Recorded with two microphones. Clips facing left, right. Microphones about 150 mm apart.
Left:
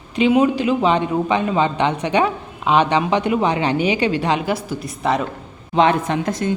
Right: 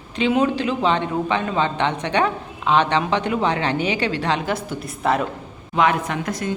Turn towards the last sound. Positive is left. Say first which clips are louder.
# left 4 dB
turn(degrees=25)  # may be behind; listen again after turning